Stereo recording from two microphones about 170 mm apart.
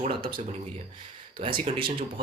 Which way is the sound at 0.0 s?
30° right (ahead or behind).